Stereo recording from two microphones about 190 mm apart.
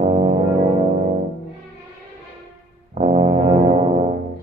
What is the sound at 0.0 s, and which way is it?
Brass instrument, 35° right (ahead or behind).